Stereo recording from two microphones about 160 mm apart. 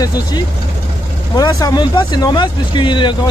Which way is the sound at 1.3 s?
25° left (ahead or behind).